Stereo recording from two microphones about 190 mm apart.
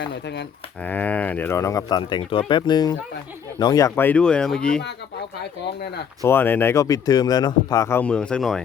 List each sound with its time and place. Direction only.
0.0 s speech: 65° left (ahead or behind)
0.9 s speech: 10° left (ahead or behind)
6.2 s speech: 10° left (ahead or behind)